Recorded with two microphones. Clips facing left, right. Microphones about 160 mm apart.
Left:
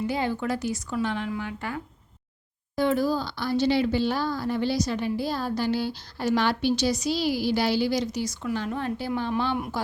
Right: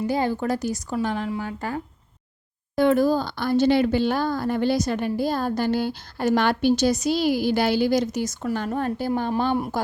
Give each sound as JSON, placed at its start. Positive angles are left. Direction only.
{"t": 0.1, "sound": "a woman's voice", "side_deg": -40}
{"t": 2.7, "sound": "speech", "side_deg": -55}